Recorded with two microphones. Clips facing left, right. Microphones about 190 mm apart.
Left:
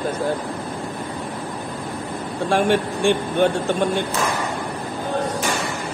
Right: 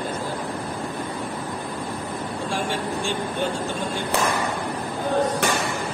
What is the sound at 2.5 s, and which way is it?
Speech, 65° left (ahead or behind).